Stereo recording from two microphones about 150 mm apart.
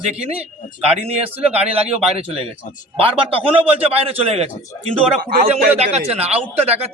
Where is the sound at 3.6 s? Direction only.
40° right (ahead or behind).